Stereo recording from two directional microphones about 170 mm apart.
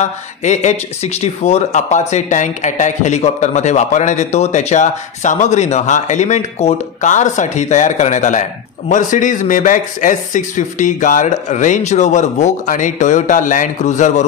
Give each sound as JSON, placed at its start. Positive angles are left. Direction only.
{"t": 0.0, "sound": "speech", "side_deg": 45}